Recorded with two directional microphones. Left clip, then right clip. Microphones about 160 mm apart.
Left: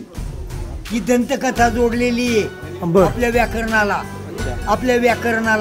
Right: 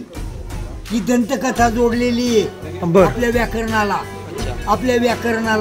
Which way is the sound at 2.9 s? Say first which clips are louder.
Right 1 dB; 10° left (ahead or behind).